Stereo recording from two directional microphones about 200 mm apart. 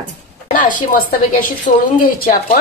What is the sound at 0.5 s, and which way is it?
A woman's voice, 40° left (ahead or behind).